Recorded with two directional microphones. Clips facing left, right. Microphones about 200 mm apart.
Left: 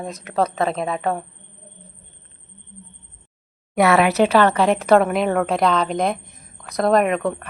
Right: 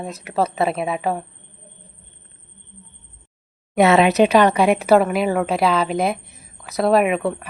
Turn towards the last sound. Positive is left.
turn(degrees=-5)  # may be behind; listen again after turning